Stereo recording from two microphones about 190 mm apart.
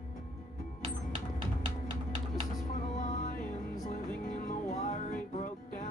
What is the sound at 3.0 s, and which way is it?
Music, 45° left (ahead or behind).